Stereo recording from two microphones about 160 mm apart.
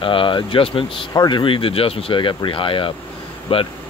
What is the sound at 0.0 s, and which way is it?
Speech, 35° left (ahead or behind).